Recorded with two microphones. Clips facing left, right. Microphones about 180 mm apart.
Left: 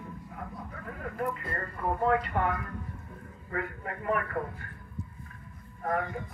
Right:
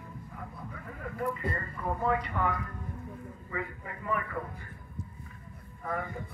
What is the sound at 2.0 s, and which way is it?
Speech, 55° left (ahead or behind).